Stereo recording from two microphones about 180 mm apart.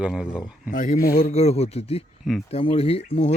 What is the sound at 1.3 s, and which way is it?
Speech, 35° left (ahead or behind).